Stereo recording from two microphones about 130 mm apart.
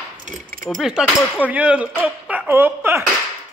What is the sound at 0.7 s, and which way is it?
Speech, 5° right (ahead or behind).